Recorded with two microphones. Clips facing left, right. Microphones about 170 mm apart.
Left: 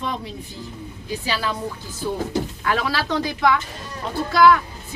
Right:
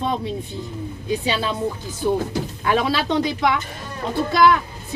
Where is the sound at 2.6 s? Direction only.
20° right (ahead or behind).